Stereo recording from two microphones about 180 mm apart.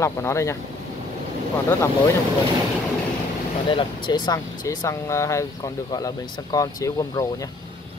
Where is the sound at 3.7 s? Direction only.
25° left (ahead or behind).